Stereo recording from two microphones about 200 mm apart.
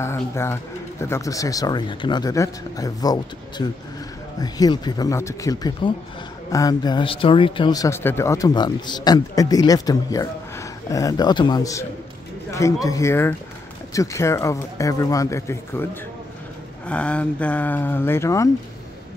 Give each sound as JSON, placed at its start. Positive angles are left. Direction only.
{"t": 0.0, "sound": "a man's voice", "side_deg": 15}